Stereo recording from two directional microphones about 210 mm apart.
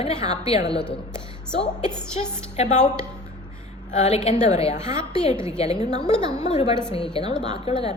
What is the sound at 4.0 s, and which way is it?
A woman's voice, 30° left (ahead or behind).